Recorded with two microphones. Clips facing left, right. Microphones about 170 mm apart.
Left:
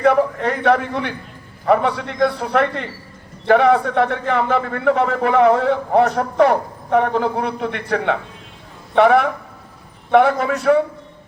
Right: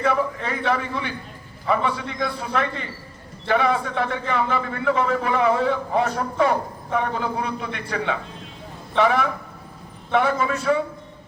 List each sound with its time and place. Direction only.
0.0 s a man's voice: 60° left (ahead or behind)